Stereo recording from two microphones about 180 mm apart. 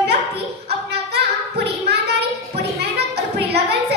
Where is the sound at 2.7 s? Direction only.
65° right (ahead or behind).